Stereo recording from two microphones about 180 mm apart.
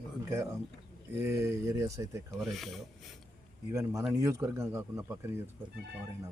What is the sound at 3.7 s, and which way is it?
A man's voice, 15° right (ahead or behind).